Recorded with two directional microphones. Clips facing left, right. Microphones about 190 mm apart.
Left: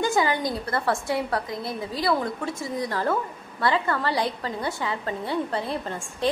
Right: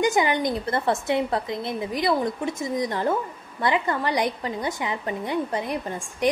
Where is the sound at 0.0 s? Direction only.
20° right (ahead or behind).